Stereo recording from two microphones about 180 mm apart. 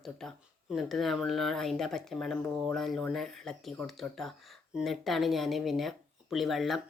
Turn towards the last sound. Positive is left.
turn(degrees=0)  # may be behind; listen again after turning